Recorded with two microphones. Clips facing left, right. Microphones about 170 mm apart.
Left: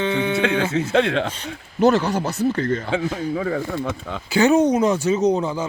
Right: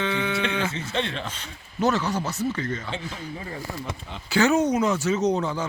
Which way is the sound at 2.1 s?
60° left (ahead or behind).